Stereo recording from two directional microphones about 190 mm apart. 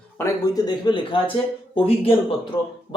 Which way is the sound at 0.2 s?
20° left (ahead or behind).